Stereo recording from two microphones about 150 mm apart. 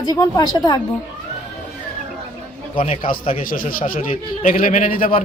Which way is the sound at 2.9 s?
70° left (ahead or behind).